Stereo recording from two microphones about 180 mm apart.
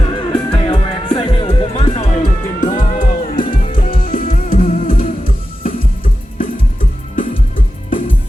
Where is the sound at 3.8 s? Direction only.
50° left (ahead or behind).